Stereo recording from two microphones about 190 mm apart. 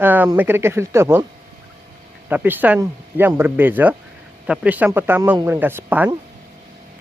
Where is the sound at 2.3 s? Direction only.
10° right (ahead or behind).